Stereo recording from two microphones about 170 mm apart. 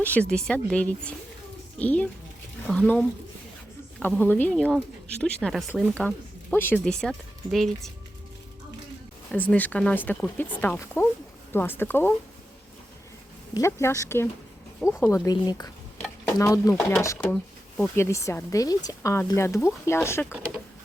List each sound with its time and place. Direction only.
0.0 s speech: 10° left (ahead or behind)
9.3 s speech: 10° left (ahead or behind)
13.5 s speech: 15° left (ahead or behind)
17.3 s a sound: 5° left (ahead or behind)
17.9 s speech: 15° left (ahead or behind)